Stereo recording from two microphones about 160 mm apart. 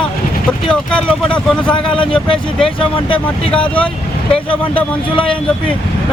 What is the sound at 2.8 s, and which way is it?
Speech, 35° left (ahead or behind).